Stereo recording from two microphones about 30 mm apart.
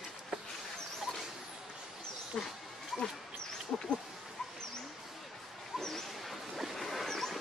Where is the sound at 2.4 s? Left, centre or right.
Left.